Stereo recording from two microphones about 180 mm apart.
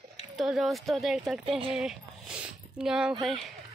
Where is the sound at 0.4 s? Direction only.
Centre (ahead or behind).